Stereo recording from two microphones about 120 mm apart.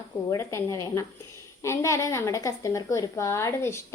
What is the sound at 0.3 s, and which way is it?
A woman's voice, 25° left (ahead or behind).